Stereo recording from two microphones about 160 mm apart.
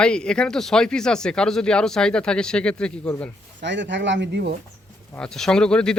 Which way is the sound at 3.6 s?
90° right.